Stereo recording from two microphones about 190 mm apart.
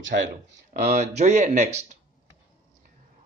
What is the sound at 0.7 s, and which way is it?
Speech, 40° right (ahead or behind).